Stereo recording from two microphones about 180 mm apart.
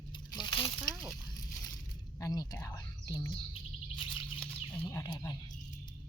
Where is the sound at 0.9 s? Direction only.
Centre (ahead or behind).